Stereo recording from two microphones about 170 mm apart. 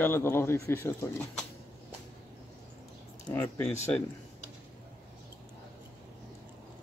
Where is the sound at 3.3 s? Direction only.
10° left (ahead or behind).